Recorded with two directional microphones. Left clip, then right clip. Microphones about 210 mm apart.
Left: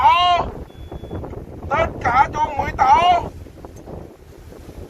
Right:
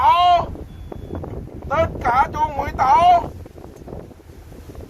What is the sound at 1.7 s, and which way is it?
Speech, 55° right (ahead or behind).